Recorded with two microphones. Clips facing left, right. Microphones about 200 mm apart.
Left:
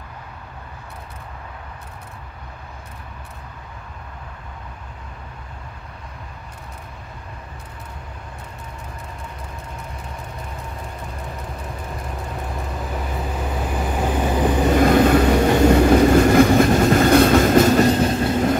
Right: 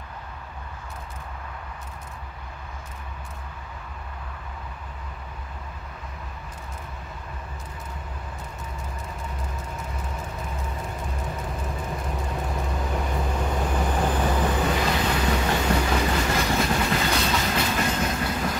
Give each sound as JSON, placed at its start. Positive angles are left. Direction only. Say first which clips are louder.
{"t": 11.2, "sound": "vehicle", "louder": "even", "side_deg": 0}
{"t": 14.0, "sound": "train", "louder": "left 6 dB", "side_deg": 15}
{"t": 14.8, "sound": "train", "louder": "left 11 dB", "side_deg": 50}